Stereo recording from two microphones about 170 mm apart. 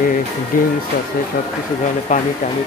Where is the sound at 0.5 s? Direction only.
55° left (ahead or behind).